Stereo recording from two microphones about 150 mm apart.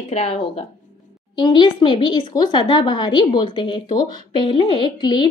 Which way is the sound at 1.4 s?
30° left (ahead or behind).